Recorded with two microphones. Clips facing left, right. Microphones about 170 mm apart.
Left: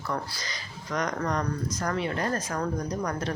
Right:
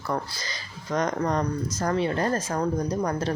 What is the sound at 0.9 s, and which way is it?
Speech, 25° right (ahead or behind).